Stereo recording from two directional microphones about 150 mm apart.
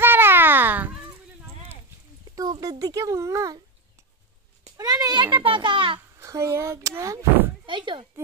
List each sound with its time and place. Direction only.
0.0 s a sound: 15° right (ahead or behind)
2.6 s speech: 25° right (ahead or behind)
4.7 s a child's voice: 25° right (ahead or behind)
6.1 s speech: 20° right (ahead or behind)
7.6 s speech: 35° right (ahead or behind)